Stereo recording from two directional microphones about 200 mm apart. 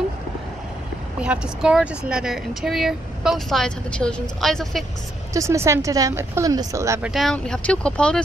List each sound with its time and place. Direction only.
1.2 s speech: 5° right (ahead or behind)
5.3 s speech: 15° right (ahead or behind)
7.1 s speech: centre (ahead or behind)